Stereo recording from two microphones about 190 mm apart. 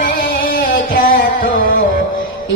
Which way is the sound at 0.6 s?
45° left (ahead or behind).